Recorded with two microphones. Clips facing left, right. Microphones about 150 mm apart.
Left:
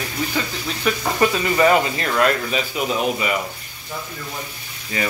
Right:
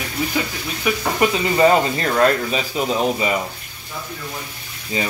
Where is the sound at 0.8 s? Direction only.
10° right (ahead or behind).